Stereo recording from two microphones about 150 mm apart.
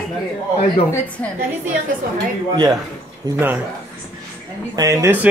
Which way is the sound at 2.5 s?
25° right (ahead or behind).